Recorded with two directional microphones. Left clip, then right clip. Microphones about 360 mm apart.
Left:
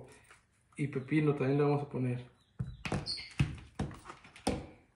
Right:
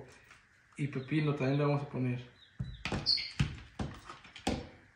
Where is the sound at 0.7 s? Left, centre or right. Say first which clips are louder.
Left 2 dB; centre.